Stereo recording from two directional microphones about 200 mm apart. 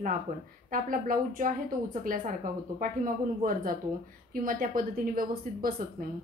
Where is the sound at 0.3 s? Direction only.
45° right (ahead or behind).